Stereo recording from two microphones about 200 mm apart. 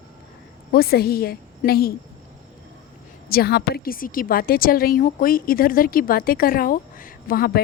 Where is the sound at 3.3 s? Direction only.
50° left (ahead or behind).